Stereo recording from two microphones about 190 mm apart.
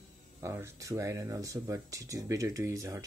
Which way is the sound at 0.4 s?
15° right (ahead or behind).